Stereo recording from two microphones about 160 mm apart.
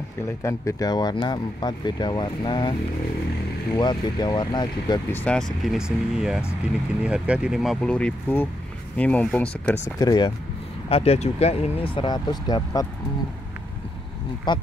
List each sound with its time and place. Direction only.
0.4 s speech: 20° left (ahead or behind)
3.7 s speech: 30° left (ahead or behind)
5.1 s speech: 10° left (ahead or behind)
9.9 s speech: 25° left (ahead or behind)
10.9 s speech: 40° left (ahead or behind)
14.5 s speech: 30° left (ahead or behind)